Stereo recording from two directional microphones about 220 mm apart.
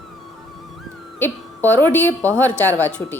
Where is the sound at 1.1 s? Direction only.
10° left (ahead or behind).